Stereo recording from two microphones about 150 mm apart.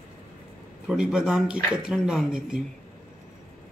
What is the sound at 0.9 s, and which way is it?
Speech, 5° right (ahead or behind).